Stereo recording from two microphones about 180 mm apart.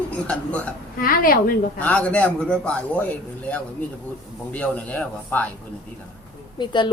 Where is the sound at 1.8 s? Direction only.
5° left (ahead or behind).